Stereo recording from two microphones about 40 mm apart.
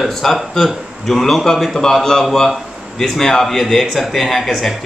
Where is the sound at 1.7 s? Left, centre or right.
Centre.